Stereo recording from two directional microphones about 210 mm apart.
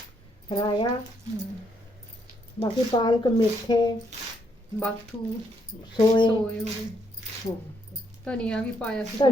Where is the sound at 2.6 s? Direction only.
20° left (ahead or behind).